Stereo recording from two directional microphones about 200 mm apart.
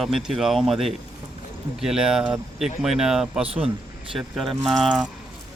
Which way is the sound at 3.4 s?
30° right (ahead or behind).